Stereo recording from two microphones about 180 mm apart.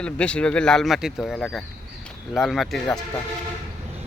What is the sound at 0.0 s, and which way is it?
Speech, 5° left (ahead or behind).